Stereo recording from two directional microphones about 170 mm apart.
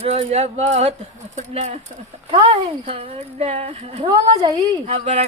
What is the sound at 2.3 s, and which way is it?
Speech, 30° right (ahead or behind).